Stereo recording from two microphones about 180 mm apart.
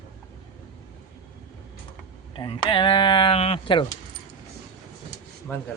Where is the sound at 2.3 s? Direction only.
30° left (ahead or behind).